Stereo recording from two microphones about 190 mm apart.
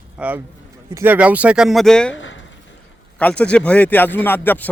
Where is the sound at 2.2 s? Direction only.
90° left.